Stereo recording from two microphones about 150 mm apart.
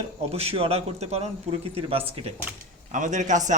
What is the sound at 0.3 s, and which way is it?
A man's voice, 40° right (ahead or behind).